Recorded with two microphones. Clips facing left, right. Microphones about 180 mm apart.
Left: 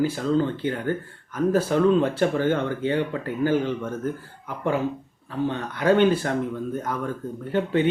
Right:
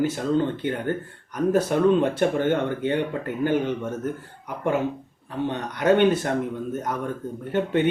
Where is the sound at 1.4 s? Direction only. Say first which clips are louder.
Even; 20° right (ahead or behind).